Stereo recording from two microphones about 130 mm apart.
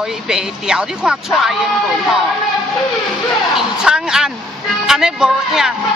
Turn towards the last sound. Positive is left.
turn(degrees=-5)  # may be behind; listen again after turning